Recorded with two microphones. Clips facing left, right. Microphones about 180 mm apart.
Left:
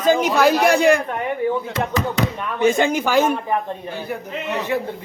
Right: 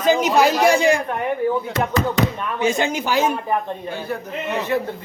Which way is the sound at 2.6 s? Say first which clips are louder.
Left 4 dB; 55° left (ahead or behind).